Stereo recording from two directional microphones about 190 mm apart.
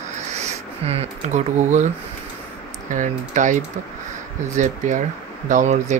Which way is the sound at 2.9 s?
40° right (ahead or behind).